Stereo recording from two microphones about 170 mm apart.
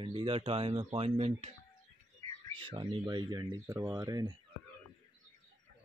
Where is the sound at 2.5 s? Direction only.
30° right (ahead or behind).